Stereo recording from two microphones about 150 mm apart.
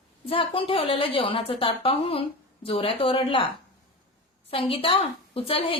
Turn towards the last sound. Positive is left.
turn(degrees=35)  # may be behind; listen again after turning